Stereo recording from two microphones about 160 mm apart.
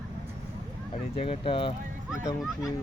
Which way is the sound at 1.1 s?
40° left (ahead or behind).